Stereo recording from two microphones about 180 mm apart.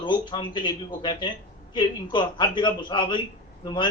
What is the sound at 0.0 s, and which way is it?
A man's voice, 25° left (ahead or behind).